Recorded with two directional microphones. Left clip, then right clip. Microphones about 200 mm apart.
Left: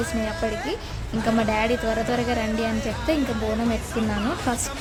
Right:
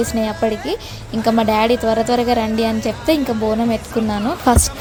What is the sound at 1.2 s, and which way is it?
A woman's voice, 20° right (ahead or behind).